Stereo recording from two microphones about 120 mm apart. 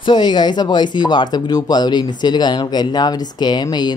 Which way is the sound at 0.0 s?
40° left (ahead or behind).